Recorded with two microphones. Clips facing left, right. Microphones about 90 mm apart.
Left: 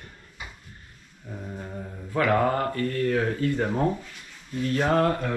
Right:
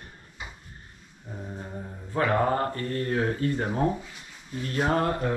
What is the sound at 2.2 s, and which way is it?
Speech, 25° right (ahead or behind).